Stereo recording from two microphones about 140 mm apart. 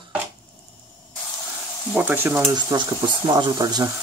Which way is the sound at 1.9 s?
10° right (ahead or behind).